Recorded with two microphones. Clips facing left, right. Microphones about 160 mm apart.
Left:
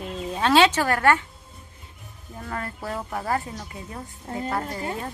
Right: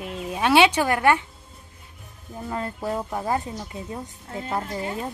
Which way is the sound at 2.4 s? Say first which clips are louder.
Right 3 dB; 20° right (ahead or behind).